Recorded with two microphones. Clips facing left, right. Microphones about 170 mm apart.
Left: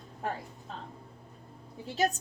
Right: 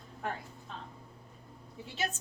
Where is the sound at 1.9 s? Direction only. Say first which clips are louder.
Left 8 dB; 40° left (ahead or behind).